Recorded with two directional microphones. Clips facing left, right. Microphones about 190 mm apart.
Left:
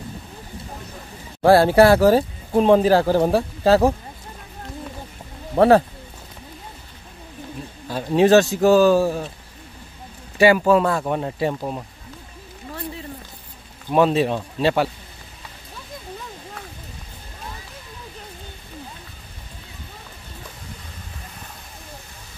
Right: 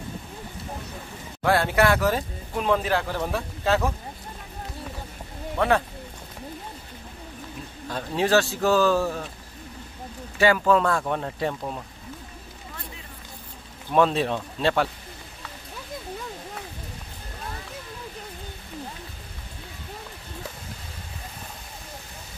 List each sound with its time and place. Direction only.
1.4 s speech: 35° left (ahead or behind)
5.6 s speech: 35° left (ahead or behind)
8.2 s speech: 20° left (ahead or behind)
10.4 s speech: 15° left (ahead or behind)
13.9 s speech: 5° left (ahead or behind)